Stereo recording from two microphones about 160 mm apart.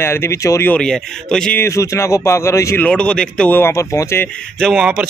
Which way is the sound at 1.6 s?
20° left (ahead or behind).